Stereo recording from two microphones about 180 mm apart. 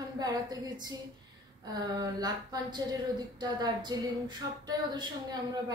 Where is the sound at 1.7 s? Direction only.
20° right (ahead or behind).